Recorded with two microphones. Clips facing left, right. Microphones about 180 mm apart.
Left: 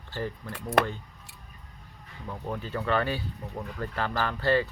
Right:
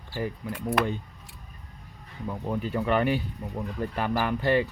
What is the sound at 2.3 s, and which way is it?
Speech, 15° right (ahead or behind).